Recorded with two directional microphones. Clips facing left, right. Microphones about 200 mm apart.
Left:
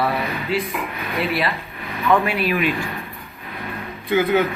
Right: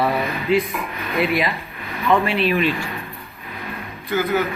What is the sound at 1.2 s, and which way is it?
Speech, 10° right (ahead or behind).